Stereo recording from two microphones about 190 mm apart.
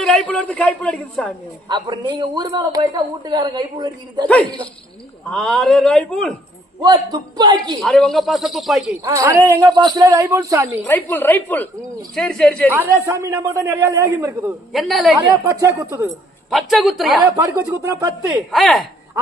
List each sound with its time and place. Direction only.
0.0 s a man's voice: 5° left (ahead or behind)
1.6 s a man's voice: 25° right (ahead or behind)
4.3 s a woman's voice: 5° left (ahead or behind)
6.8 s a man's voice: 20° right (ahead or behind)
7.8 s a man's voice: centre (ahead or behind)
9.0 s a man's voice: 15° right (ahead or behind)
10.8 s a woman's voice: 10° left (ahead or behind)
12.7 s a man's voice: 15° right (ahead or behind)
14.7 s a man's voice: centre (ahead or behind)
15.3 s a man's voice: 15° right (ahead or behind)
16.5 s a man's voice: centre (ahead or behind)
17.3 s a man's voice: 15° right (ahead or behind)
18.5 s a man's voice: centre (ahead or behind)